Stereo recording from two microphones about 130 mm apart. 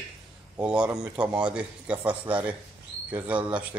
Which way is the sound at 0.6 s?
10° right (ahead or behind).